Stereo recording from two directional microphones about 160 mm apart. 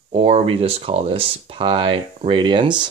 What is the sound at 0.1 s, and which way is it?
Speech, 40° right (ahead or behind).